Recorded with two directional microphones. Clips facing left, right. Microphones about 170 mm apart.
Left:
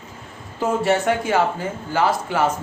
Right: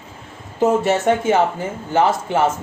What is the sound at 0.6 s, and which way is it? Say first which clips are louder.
Speech: right 3 dB; 25° right (ahead or behind).